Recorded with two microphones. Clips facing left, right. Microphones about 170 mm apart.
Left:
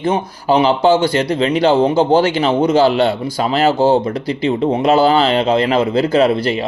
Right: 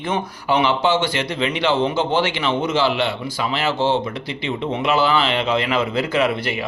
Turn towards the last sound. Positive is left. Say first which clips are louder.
# left 7 dB
turn(degrees=35)  # may be behind; listen again after turning